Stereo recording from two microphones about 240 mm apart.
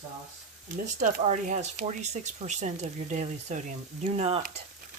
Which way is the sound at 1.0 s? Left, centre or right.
Right.